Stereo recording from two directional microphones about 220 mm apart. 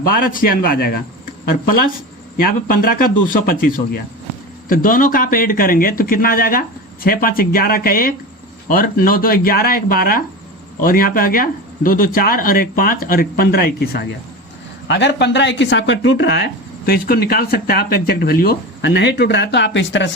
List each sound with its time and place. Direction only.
0.1 s speech: 40° left (ahead or behind)
2.4 s speech: 40° left (ahead or behind)